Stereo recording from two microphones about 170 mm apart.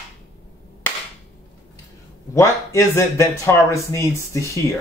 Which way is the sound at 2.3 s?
15° left (ahead or behind).